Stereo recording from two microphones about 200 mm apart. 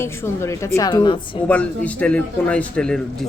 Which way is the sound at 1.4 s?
5° left (ahead or behind).